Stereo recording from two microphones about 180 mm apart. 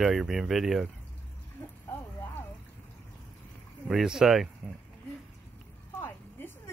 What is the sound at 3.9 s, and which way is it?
Speech, centre (ahead or behind).